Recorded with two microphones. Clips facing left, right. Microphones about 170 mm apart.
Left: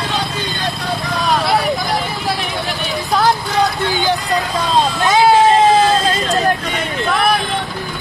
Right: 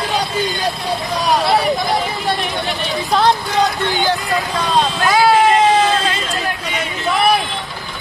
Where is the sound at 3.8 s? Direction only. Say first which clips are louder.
Left 1 dB; 15° left (ahead or behind).